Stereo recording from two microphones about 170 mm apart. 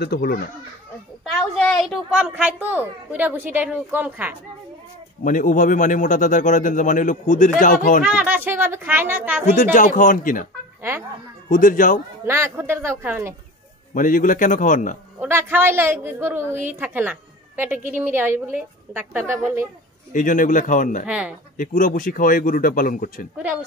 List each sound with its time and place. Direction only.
0.0 s speech: 65° left (ahead or behind)
1.6 s a woman's voice: centre (ahead or behind)
5.2 s speech: 50° left (ahead or behind)
8.0 s a woman's voice: 5° right (ahead or behind)
9.6 s speech: 50° left (ahead or behind)
10.8 s speech: 15° right (ahead or behind)
11.4 s speech: 50° left (ahead or behind)
12.3 s a woman's voice: 15° right (ahead or behind)
13.9 s speech: 55° left (ahead or behind)
15.1 s a woman's voice: 15° right (ahead or behind)
20.1 s speech: 50° left (ahead or behind)
21.1 s speech: 5° right (ahead or behind)
21.5 s speech: 50° left (ahead or behind)